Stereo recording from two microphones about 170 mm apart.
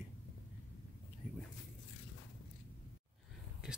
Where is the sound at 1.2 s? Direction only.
10° right (ahead or behind).